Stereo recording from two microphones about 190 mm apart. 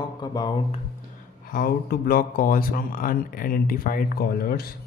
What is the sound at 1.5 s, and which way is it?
Speech, 50° left (ahead or behind).